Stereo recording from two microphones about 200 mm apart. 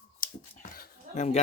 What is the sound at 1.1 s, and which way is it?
Speech, 35° left (ahead or behind).